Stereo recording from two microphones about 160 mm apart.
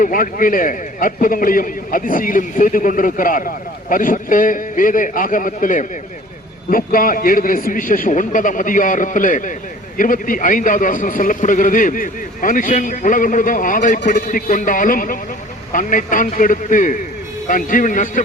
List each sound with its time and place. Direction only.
0.0 s a man's voice: 60° left (ahead or behind)